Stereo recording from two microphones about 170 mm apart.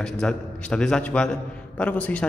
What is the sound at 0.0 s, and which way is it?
A man's voice, 5° left (ahead or behind).